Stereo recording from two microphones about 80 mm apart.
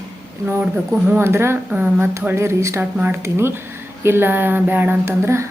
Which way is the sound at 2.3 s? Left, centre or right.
Right.